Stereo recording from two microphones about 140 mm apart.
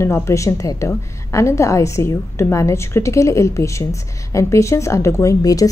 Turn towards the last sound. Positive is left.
turn(degrees=25)  # may be behind; listen again after turning